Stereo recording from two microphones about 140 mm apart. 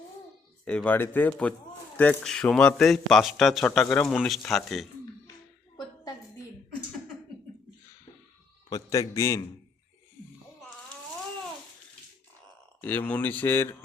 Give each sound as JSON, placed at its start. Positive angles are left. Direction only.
{"t": 0.6, "sound": "a man's voice", "side_deg": 10}
{"t": 8.7, "sound": "a man's voice", "side_deg": 25}
{"t": 12.8, "sound": "speech", "side_deg": 10}